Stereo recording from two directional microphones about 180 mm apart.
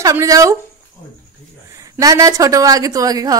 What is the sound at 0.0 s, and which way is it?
Speech, 15° right (ahead or behind).